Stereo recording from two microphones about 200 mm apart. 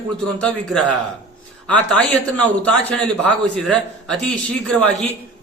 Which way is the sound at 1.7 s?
5° left (ahead or behind).